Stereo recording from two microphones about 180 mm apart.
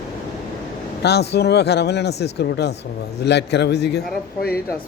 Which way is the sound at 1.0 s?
65° left (ahead or behind).